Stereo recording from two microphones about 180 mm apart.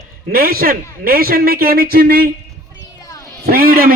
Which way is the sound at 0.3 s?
55° right (ahead or behind).